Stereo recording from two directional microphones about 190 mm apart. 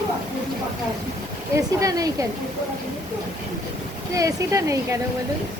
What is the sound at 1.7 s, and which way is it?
Speech, 15° right (ahead or behind).